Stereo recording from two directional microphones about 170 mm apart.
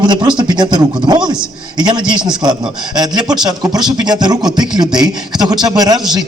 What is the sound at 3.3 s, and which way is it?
Speech, 25° right (ahead or behind).